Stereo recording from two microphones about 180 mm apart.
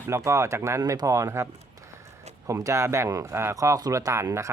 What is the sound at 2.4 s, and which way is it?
Speech, 15° right (ahead or behind).